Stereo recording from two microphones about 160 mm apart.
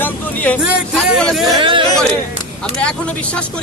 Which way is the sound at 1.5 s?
30° right (ahead or behind).